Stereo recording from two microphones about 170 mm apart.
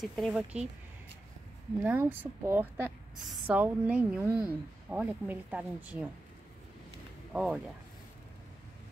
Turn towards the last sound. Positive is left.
turn(degrees=-5)  # may be behind; listen again after turning